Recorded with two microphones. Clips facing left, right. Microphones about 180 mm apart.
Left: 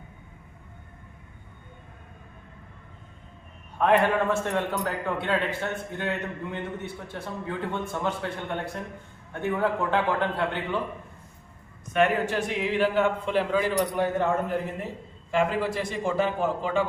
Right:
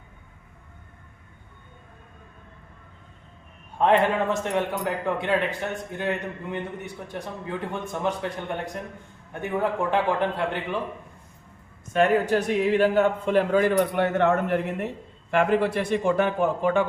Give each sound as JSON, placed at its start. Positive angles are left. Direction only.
{"t": 3.8, "sound": "a man's voice", "side_deg": -20}
{"t": 9.3, "sound": "a man's voice", "side_deg": -15}
{"t": 11.9, "sound": "a man's voice", "side_deg": -40}